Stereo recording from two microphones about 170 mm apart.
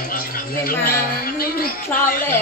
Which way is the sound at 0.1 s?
55° left (ahead or behind).